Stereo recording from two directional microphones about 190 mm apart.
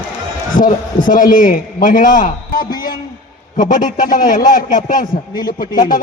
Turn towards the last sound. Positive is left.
turn(degrees=45)  # may be behind; listen again after turning